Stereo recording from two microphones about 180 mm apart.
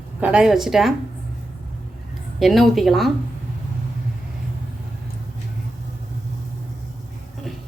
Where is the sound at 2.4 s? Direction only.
Centre (ahead or behind).